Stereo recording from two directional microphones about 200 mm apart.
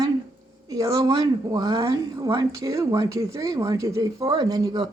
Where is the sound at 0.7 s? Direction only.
15° right (ahead or behind).